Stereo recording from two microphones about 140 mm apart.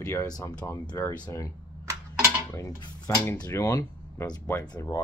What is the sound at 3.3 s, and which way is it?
Speech, 25° left (ahead or behind).